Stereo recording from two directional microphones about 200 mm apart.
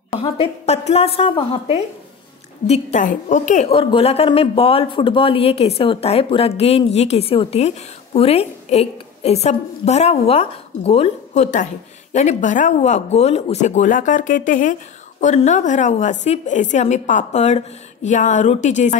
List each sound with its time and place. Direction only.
0.2 s a woman's voice: 30° left (ahead or behind)